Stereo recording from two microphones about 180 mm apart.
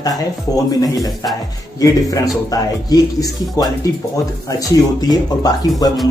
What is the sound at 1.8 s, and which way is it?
Speech, 20° left (ahead or behind).